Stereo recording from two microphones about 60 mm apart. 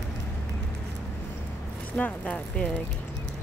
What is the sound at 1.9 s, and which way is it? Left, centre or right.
Speech, left.